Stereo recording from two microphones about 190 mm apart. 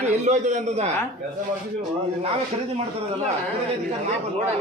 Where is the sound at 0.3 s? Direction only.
40° right (ahead or behind).